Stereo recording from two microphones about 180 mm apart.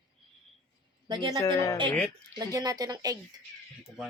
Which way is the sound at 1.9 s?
5° left (ahead or behind).